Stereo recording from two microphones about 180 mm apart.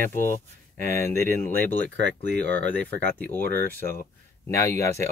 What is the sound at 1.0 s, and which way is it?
Speech, 15° left (ahead or behind).